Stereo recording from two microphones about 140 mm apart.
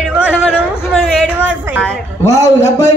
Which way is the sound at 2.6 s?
55° left (ahead or behind).